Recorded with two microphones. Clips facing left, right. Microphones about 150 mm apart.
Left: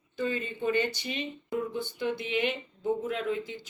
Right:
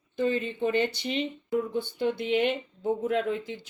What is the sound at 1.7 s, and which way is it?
Speech, 50° right (ahead or behind).